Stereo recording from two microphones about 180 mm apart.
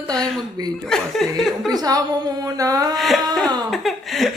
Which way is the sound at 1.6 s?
20° right (ahead or behind).